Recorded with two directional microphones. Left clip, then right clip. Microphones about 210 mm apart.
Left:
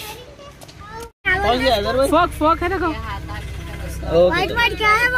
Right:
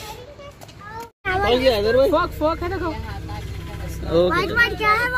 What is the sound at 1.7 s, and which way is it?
Speech, 40° right (ahead or behind).